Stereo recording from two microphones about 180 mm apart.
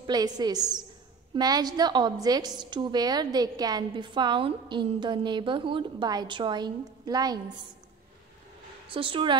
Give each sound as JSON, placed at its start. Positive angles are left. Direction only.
{"t": 0.0, "sound": "a woman's voice", "side_deg": -20}
{"t": 8.8, "sound": "a woman's voice", "side_deg": -30}